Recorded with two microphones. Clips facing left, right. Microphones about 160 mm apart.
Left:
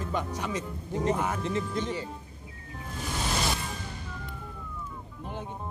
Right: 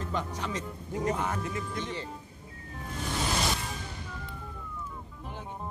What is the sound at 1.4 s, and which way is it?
Speech, 25° left (ahead or behind).